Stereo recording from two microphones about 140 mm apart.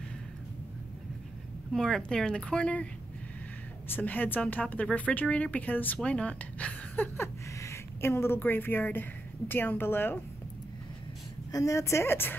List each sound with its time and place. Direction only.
1.7 s speech: centre (ahead or behind)
3.9 s speech: 10° left (ahead or behind)
11.5 s speech: 25° left (ahead or behind)